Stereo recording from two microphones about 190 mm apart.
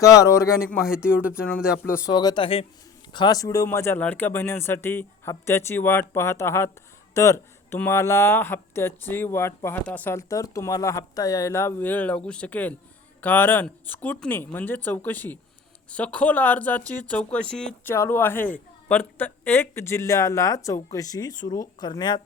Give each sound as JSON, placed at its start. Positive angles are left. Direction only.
{"t": 0.0, "sound": "speech", "side_deg": 15}
{"t": 0.7, "sound": "speech", "side_deg": -5}
{"t": 2.0, "sound": "speech", "side_deg": 20}